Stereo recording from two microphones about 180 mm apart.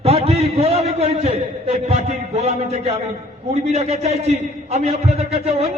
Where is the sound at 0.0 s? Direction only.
35° right (ahead or behind).